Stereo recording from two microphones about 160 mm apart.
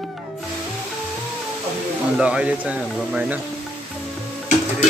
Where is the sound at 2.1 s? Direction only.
5° right (ahead or behind).